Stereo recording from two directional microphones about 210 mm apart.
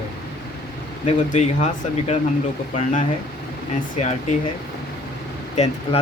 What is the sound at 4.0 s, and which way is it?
Speech, 35° left (ahead or behind).